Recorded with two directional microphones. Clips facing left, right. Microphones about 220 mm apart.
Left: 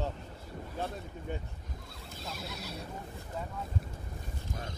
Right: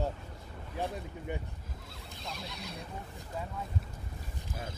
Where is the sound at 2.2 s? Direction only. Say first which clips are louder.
Left 1 dB; centre (ahead or behind).